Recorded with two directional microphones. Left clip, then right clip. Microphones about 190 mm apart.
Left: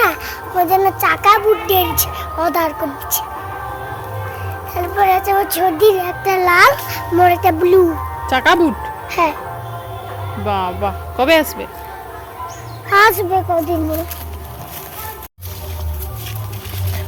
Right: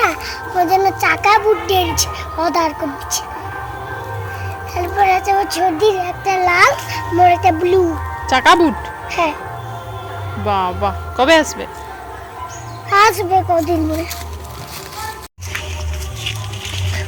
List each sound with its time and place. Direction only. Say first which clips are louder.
0.0 s a sound: left 1 dB; 10° left (ahead or behind)
4.7 s a child's voice: even; 15° left (ahead or behind)
8.3 s speech: right 2 dB; 5° right (ahead or behind)
9.0 s music: left 1 dB; 20° left (ahead or behind)
10.4 s speech: right 2 dB; centre (ahead or behind)
12.9 s a child's voice: even; 10° left (ahead or behind)